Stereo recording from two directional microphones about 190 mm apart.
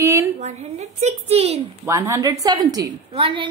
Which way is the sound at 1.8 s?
15° right (ahead or behind).